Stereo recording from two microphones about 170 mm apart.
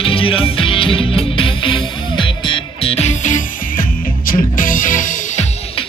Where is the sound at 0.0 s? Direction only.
30° left (ahead or behind); by 5.5 s 50° left (ahead or behind).